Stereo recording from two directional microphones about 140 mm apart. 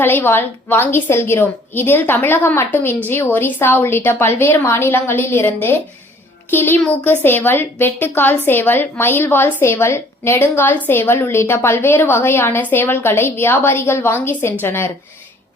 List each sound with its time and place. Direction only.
0.0 s a woman's voice: 15° left (ahead or behind)